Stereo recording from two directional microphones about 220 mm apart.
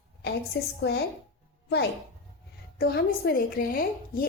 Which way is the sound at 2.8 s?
45° left (ahead or behind).